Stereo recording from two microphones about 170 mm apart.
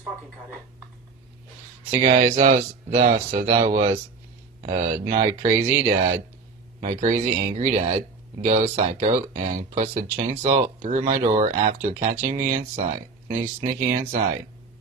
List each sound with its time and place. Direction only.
1.9 s speech: 50° right (ahead or behind)